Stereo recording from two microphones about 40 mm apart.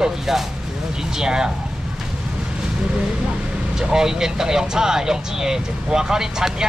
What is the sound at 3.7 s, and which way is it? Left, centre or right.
Speech, centre.